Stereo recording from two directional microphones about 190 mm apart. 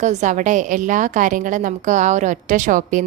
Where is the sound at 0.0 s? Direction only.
40° right (ahead or behind).